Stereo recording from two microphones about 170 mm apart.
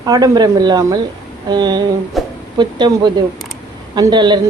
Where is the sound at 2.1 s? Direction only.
Centre (ahead or behind).